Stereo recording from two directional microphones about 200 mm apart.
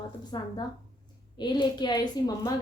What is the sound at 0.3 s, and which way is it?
A woman's voice, 20° left (ahead or behind).